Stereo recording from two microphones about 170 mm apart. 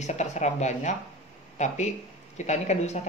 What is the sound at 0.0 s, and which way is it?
Speech, 40° left (ahead or behind).